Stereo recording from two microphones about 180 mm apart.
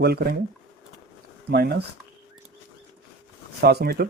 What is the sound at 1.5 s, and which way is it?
Speech, 60° right (ahead or behind).